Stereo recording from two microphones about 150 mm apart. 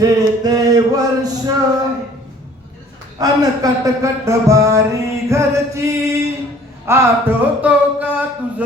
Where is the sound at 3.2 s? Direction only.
25° right (ahead or behind).